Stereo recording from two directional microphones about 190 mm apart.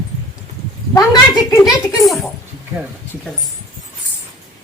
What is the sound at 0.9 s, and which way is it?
Speech, 20° left (ahead or behind).